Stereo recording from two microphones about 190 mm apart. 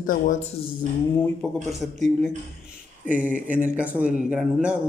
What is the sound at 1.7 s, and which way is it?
Speech, centre (ahead or behind).